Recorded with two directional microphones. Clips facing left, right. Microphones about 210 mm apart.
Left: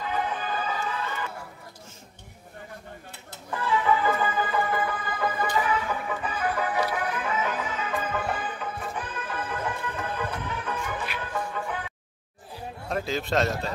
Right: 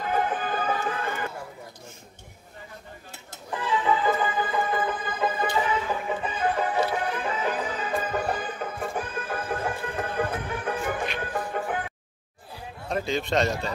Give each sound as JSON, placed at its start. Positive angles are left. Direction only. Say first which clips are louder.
{"t": 0.0, "sound": "music", "louder": "right 3 dB", "side_deg": -45}
{"t": 3.5, "sound": "music", "louder": "even", "side_deg": -20}
{"t": 12.8, "sound": "a man's voice", "louder": "right 2 dB", "side_deg": 0}